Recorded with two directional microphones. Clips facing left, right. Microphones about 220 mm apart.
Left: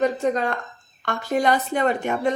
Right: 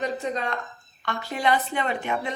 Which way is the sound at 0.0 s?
50° left (ahead or behind).